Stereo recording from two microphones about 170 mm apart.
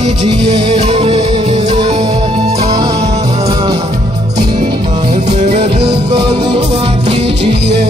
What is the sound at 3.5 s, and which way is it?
Music, 25° right (ahead or behind).